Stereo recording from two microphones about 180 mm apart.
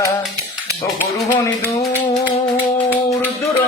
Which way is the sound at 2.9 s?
15° left (ahead or behind).